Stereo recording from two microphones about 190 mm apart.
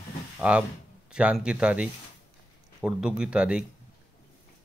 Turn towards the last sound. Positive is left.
turn(degrees=-5)  # may be behind; listen again after turning